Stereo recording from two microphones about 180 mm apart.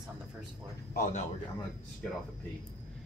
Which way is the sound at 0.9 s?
45° left (ahead or behind).